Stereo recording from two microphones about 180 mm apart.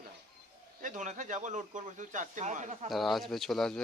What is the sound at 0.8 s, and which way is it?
Speech, 45° right (ahead or behind).